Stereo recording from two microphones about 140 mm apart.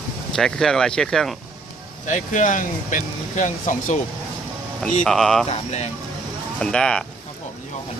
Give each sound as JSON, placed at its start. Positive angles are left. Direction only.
{"t": 0.3, "sound": "speech", "side_deg": 5}
{"t": 2.0, "sound": "speech", "side_deg": 65}
{"t": 5.0, "sound": "speech", "side_deg": 5}
{"t": 5.5, "sound": "speech", "side_deg": 50}
{"t": 6.6, "sound": "speech", "side_deg": 5}